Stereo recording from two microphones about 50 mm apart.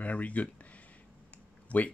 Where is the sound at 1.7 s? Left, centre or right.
Left.